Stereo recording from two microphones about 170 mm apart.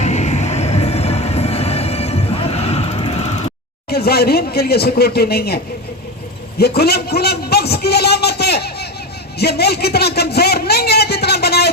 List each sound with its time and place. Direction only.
0.0 s vehicle: 40° left (ahead or behind)
3.8 s speech: 65° left (ahead or behind)
6.6 s speech: 70° left (ahead or behind)